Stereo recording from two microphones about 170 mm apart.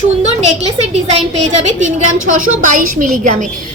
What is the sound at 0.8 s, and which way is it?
A woman's voice, 40° right (ahead or behind).